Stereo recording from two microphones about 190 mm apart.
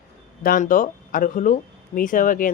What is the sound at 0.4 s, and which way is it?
Speech, 45° left (ahead or behind).